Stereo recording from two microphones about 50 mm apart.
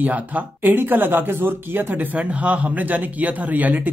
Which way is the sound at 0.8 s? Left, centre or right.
Right.